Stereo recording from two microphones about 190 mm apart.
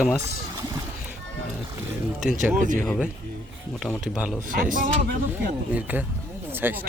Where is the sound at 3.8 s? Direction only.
Centre (ahead or behind).